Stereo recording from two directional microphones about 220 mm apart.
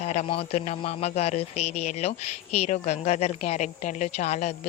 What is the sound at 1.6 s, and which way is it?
Speech, 90° left.